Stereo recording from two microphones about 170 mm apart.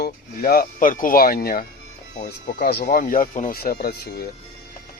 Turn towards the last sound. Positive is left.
turn(degrees=65)  # may be behind; listen again after turning